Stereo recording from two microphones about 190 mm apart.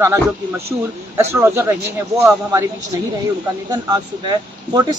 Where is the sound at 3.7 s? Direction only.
20° right (ahead or behind).